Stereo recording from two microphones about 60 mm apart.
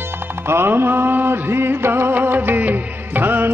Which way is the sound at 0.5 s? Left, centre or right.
Right.